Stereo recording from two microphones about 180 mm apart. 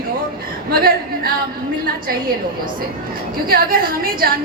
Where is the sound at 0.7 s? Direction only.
55° right (ahead or behind).